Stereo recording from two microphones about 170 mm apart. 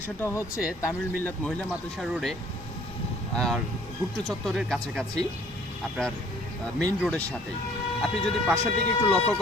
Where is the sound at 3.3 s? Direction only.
5° left (ahead or behind).